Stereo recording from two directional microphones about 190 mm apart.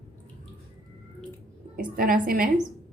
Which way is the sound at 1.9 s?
50° right (ahead or behind).